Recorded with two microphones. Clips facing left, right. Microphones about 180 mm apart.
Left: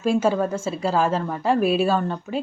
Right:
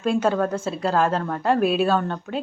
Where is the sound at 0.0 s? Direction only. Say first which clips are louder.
Left 1 dB; 5° left (ahead or behind).